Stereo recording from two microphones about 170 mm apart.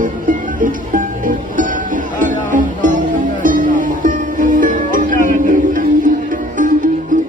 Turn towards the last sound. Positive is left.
turn(degrees=-50)  # may be behind; listen again after turning